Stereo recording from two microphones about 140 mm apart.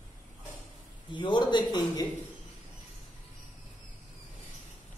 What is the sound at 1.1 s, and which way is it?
Speech, 35° left (ahead or behind).